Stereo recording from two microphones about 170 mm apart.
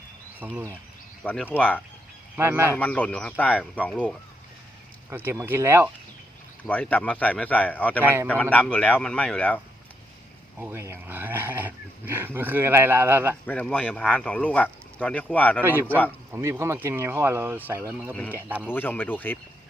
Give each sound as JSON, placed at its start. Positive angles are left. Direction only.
{"t": 0.3, "sound": "speech", "side_deg": -10}
{"t": 1.2, "sound": "speech", "side_deg": 5}
{"t": 2.3, "sound": "speech", "side_deg": -15}
{"t": 2.7, "sound": "speech", "side_deg": 10}
{"t": 5.1, "sound": "speech", "side_deg": -15}
{"t": 6.7, "sound": "speech", "side_deg": 10}
{"t": 8.0, "sound": "speech", "side_deg": -15}
{"t": 8.3, "sound": "speech", "side_deg": 10}
{"t": 10.6, "sound": "speech", "side_deg": -15}
{"t": 13.4, "sound": "speech", "side_deg": 5}
{"t": 15.6, "sound": "speech", "side_deg": -15}
{"t": 18.1, "sound": "speech", "side_deg": 10}
{"t": 18.4, "sound": "speech", "side_deg": -5}
{"t": 18.7, "sound": "speech", "side_deg": 10}